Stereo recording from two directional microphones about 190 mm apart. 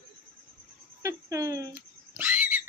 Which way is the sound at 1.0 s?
15° right (ahead or behind).